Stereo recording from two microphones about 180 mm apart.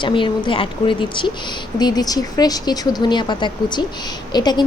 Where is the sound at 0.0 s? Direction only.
25° left (ahead or behind).